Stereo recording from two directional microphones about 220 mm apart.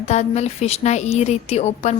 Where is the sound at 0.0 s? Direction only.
30° left (ahead or behind).